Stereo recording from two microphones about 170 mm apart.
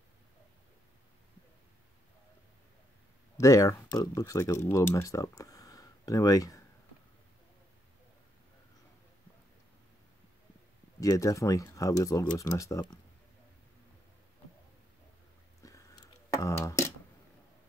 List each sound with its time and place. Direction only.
3.3 s speech: 20° left (ahead or behind)
11.0 s speech: 20° left (ahead or behind)
15.6 s a sound: 20° left (ahead or behind)